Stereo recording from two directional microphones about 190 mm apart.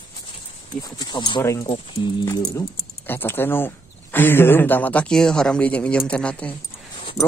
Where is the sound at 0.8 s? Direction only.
20° left (ahead or behind).